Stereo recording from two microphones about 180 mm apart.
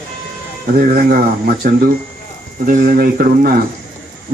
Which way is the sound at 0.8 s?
50° right (ahead or behind).